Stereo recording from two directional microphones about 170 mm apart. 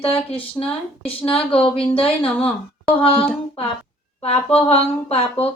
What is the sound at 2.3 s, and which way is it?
Speech, 10° left (ahead or behind).